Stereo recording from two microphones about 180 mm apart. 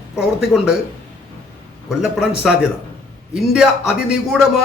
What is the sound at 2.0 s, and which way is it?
A man's voice, 5° right (ahead or behind).